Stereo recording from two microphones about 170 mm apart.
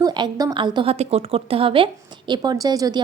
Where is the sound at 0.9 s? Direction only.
40° right (ahead or behind).